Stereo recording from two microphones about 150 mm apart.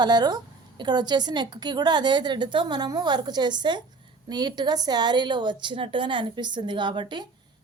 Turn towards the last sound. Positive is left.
turn(degrees=-30)  # may be behind; listen again after turning